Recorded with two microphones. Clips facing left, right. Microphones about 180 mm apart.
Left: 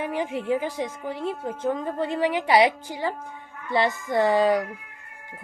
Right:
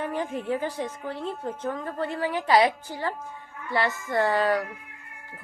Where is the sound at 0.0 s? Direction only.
15° left (ahead or behind).